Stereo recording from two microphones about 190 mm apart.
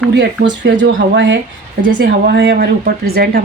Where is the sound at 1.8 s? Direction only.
45° right (ahead or behind).